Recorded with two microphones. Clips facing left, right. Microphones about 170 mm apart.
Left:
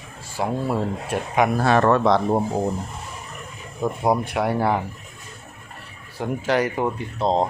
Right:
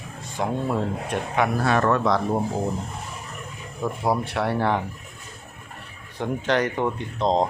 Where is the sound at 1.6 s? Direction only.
35° left (ahead or behind).